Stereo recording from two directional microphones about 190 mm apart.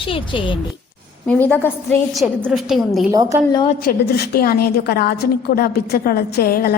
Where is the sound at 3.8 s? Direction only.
50° left (ahead or behind).